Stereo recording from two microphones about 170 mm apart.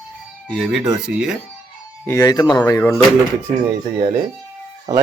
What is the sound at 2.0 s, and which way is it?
Speech, 20° left (ahead or behind).